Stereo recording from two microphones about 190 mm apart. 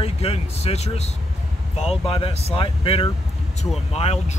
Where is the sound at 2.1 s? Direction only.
30° left (ahead or behind).